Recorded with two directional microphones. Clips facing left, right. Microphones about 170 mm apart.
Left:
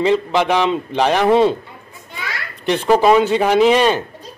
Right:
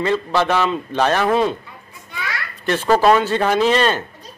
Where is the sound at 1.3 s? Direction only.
25° left (ahead or behind).